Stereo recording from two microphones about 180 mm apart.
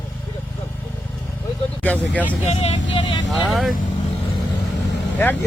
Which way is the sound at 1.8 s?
10° left (ahead or behind).